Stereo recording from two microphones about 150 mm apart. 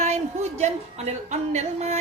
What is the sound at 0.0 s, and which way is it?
A woman's voice, 50° right (ahead or behind).